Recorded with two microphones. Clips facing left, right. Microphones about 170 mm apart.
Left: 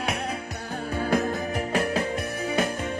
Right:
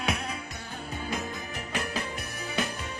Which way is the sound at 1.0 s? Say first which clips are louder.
Left 10 dB; 65° left (ahead or behind).